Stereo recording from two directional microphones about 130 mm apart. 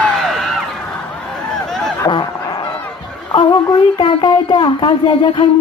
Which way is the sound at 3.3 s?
35° left (ahead or behind).